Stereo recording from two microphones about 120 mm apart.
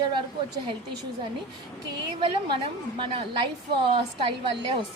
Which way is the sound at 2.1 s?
45° right (ahead or behind).